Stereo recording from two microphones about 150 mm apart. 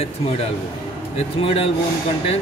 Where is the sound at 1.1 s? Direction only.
40° left (ahead or behind).